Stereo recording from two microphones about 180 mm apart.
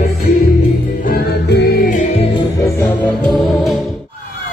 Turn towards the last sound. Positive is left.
turn(degrees=0)  # may be behind; listen again after turning